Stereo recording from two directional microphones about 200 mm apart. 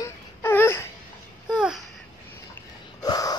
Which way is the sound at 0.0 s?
10° left (ahead or behind).